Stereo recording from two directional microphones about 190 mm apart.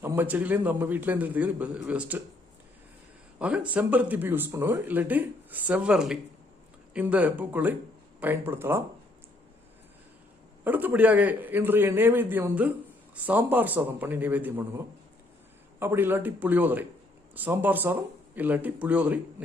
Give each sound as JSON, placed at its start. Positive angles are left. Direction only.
{"t": 0.0, "sound": "speech", "side_deg": -10}
{"t": 3.3, "sound": "speech", "side_deg": -5}
{"t": 10.6, "sound": "speech", "side_deg": -10}
{"t": 15.8, "sound": "speech", "side_deg": -10}